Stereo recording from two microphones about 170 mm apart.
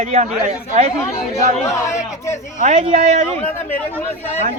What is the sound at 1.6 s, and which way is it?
Speech, 15° left (ahead or behind).